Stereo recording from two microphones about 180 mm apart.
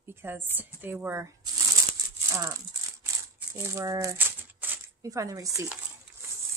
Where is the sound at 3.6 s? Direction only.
15° right (ahead or behind).